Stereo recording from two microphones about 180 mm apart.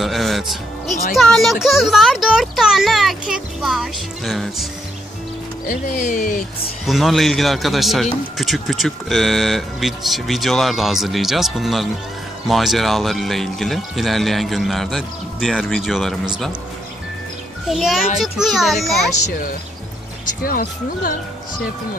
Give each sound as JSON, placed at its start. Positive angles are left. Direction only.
{"t": 0.0, "sound": "a man's voice", "side_deg": 0}
{"t": 5.7, "sound": "speech", "side_deg": 45}
{"t": 6.9, "sound": "a man's voice", "side_deg": 0}
{"t": 17.6, "sound": "a man's voice", "side_deg": 0}
{"t": 20.4, "sound": "speech", "side_deg": 50}